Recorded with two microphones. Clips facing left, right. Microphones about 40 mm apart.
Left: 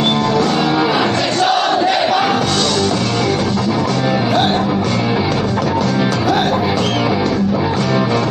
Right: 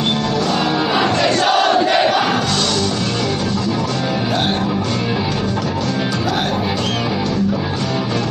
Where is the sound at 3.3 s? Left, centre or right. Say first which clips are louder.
Left 3 dB; left.